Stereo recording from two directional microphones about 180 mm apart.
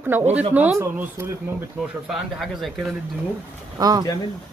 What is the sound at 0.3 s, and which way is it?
Speech, 10° right (ahead or behind).